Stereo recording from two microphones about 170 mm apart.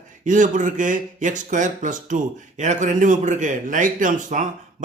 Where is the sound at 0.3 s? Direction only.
45° right (ahead or behind).